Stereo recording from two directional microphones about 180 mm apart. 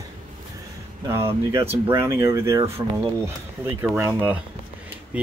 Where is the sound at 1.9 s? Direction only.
15° right (ahead or behind).